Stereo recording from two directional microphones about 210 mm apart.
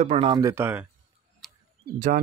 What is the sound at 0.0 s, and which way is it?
Speech, 30° right (ahead or behind).